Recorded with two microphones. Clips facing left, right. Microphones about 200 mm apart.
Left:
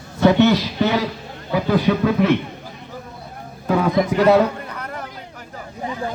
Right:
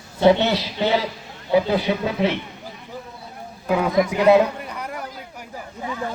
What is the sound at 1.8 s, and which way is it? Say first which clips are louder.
Speech: left 4 dB; 50° left (ahead or behind).